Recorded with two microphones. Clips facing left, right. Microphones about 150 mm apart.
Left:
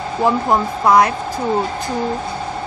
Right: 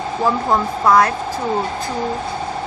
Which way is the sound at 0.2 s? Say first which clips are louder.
Left 2 dB; 15° left (ahead or behind).